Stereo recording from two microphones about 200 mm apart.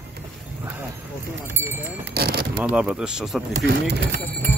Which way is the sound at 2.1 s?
50° right (ahead or behind).